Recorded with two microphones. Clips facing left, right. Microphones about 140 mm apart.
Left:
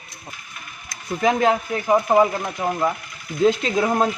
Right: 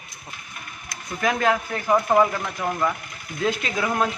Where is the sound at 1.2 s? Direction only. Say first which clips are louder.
Left 3 dB; 20° left (ahead or behind).